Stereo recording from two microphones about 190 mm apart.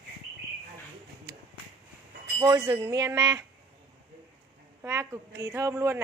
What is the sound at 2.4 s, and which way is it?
Speech, 20° right (ahead or behind).